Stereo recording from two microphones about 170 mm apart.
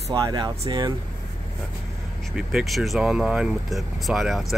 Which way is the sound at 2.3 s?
Centre (ahead or behind).